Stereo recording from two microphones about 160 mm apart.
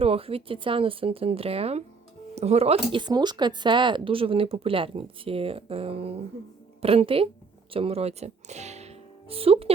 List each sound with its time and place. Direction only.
0.0 s speech: 35° right (ahead or behind)